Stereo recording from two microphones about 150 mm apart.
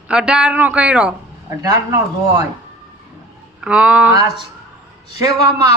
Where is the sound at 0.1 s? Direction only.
5° right (ahead or behind).